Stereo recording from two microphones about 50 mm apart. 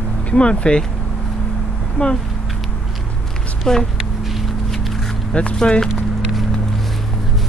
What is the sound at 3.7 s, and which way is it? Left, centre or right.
Speech, centre.